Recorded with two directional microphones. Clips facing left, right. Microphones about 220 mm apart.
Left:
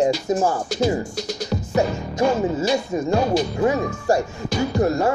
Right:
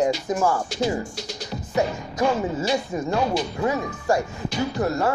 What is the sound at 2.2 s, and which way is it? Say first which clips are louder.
Speech: left 3 dB; 45° left (ahead or behind).